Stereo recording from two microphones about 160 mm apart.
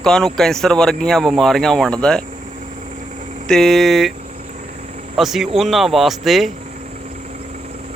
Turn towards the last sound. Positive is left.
turn(degrees=0)  # may be behind; listen again after turning